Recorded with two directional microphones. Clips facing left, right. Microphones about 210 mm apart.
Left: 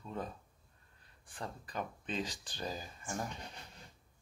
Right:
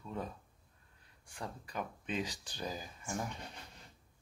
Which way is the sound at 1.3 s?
10° right (ahead or behind).